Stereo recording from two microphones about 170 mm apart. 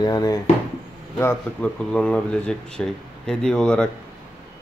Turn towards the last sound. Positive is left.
turn(degrees=5)  # may be behind; listen again after turning